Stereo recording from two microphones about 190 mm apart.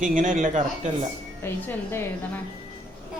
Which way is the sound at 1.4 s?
10° left (ahead or behind).